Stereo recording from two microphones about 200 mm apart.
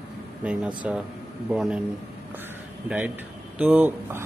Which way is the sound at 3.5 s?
10° right (ahead or behind).